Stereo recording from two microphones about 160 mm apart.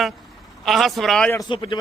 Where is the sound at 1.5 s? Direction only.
30° left (ahead or behind).